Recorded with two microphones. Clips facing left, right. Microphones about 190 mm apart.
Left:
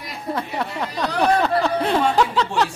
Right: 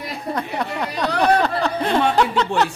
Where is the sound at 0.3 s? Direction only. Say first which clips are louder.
Even; 5° left (ahead or behind).